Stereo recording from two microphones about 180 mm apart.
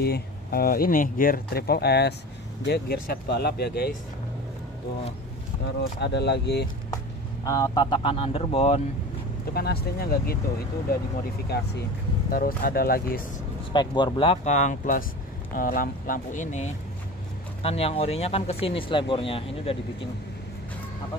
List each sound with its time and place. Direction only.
0.0 s speech: 60° left (ahead or behind)
5.9 s speech: 70° left (ahead or behind)
7.4 s speech: 20° left (ahead or behind)
9.5 s speech: 60° left (ahead or behind)
12.3 s speech: 55° left (ahead or behind)
13.7 s speech: 25° left (ahead or behind)